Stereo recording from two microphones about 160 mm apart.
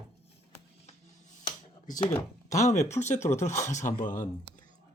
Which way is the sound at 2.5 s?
20° left (ahead or behind).